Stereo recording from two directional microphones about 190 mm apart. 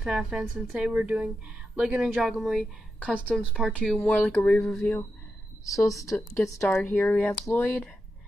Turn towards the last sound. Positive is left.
turn(degrees=10)  # may be behind; listen again after turning